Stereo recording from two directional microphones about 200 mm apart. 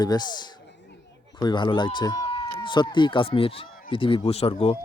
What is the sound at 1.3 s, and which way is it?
Speech, 20° left (ahead or behind).